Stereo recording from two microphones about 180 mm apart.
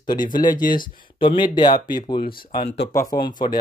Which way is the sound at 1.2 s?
25° left (ahead or behind).